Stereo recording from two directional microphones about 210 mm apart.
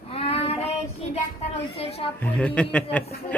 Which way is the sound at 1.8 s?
30° left (ahead or behind).